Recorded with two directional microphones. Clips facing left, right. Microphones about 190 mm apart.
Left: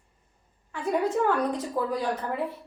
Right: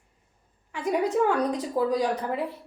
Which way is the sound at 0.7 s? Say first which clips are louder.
Right 1 dB; 15° right (ahead or behind).